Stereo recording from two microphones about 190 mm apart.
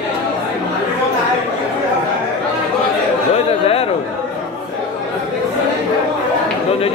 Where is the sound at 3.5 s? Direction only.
30° left (ahead or behind).